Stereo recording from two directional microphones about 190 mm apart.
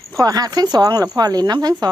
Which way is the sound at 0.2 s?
20° right (ahead or behind).